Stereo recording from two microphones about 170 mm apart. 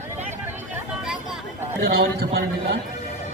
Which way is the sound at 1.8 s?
65° right (ahead or behind).